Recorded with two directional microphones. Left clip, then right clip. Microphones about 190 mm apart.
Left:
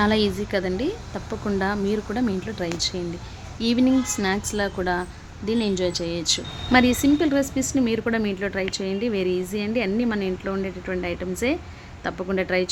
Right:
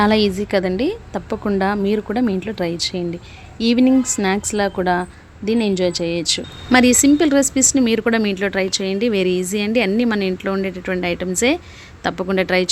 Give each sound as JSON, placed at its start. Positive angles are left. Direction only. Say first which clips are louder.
{"t": 0.0, "sound": "speech", "louder": "right 5 dB", "side_deg": -45}